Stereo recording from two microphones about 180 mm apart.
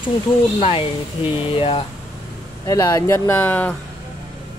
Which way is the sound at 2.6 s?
20° left (ahead or behind).